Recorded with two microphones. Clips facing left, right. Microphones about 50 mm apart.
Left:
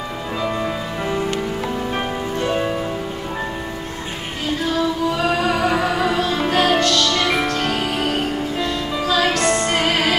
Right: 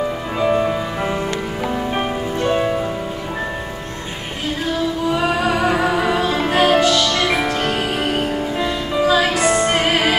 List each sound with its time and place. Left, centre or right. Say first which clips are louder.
0.4 s music: right 6 dB; right
2.4 s music: right 3 dB; centre
5.1 s music: right 1 dB; centre